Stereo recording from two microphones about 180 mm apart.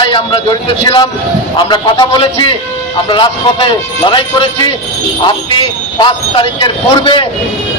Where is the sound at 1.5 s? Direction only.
25° left (ahead or behind).